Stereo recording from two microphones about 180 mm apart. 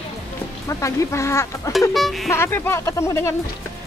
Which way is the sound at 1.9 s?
Centre (ahead or behind).